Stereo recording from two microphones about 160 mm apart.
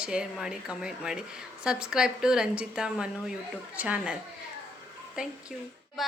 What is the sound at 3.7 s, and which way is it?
Speech, 10° right (ahead or behind).